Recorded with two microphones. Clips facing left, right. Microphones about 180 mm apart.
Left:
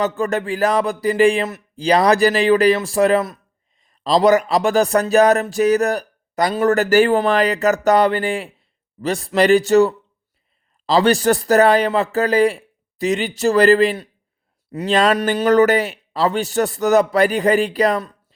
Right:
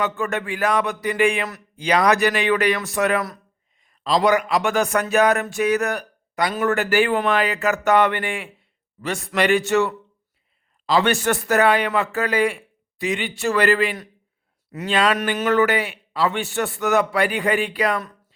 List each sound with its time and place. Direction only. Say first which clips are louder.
0.0 s speech: left 4 dB; 35° left (ahead or behind)